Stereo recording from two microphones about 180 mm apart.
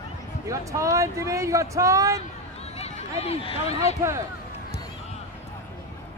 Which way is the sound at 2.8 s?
35° left (ahead or behind).